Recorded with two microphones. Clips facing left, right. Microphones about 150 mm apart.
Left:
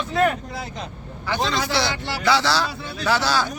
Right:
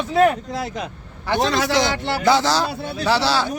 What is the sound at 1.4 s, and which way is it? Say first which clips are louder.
Speech: right 5 dB; 65° right (ahead or behind).